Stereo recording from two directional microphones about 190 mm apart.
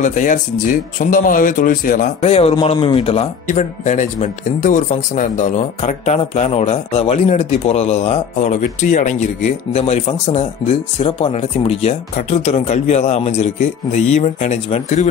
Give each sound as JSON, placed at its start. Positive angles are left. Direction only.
{"t": 0.0, "sound": "speech", "side_deg": 40}
{"t": 2.2, "sound": "speech", "side_deg": 30}